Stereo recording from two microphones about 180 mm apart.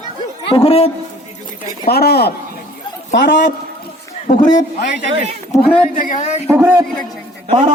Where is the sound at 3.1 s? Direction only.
75° left (ahead or behind).